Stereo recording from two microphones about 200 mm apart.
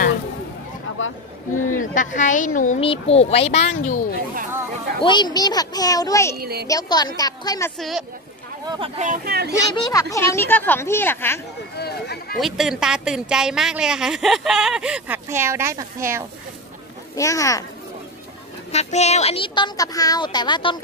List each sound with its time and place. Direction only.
0.9 s speech: 85° left
1.8 s speech: 40° left (ahead or behind)
2.8 s speech: 30° left (ahead or behind)
5.0 s speech: 20° left (ahead or behind)
6.3 s speech: 50° right (ahead or behind)
6.7 s speech: 20° left (ahead or behind)
8.6 s speech: 25° right (ahead or behind); by 9.5 s 50° right (ahead or behind)
9.8 s speech: 15° left (ahead or behind)
11.7 s speech: 55° left (ahead or behind)
12.4 s a woman's voice: centre (ahead or behind)
17.2 s speech: 15° left (ahead or behind)
18.7 s speech: 35° left (ahead or behind)